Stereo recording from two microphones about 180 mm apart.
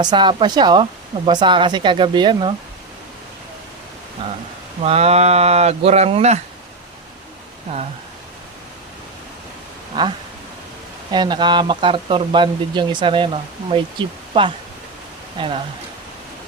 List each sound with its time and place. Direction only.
0.0 s speech: 25° right (ahead or behind)
4.2 s speech: 30° right (ahead or behind)
11.1 s speech: 25° right (ahead or behind)